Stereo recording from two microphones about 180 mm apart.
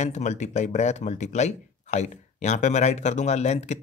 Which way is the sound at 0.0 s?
40° left (ahead or behind).